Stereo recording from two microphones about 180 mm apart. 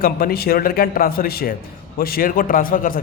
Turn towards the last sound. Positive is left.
turn(degrees=50)  # may be behind; listen again after turning